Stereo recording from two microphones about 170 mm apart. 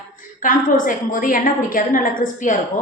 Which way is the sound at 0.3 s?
50° left (ahead or behind).